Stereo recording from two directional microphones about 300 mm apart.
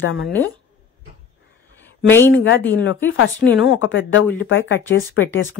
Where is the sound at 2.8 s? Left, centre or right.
Left.